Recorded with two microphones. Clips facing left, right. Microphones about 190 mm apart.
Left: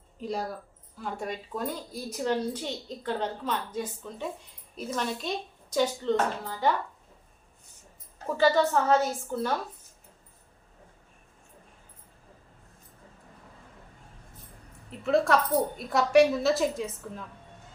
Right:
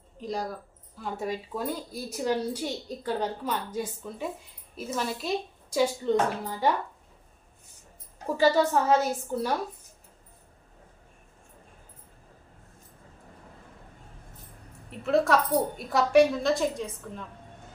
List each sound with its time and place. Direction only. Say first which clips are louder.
0.2 s a woman's voice: even; centre (ahead or behind); by 6.7 s 15° right (ahead or behind)
8.3 s a woman's voice: right 1 dB; 10° right (ahead or behind)
14.8 s a woman's voice: even; centre (ahead or behind)